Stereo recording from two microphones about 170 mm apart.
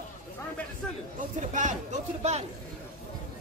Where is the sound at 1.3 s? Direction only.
45° right (ahead or behind).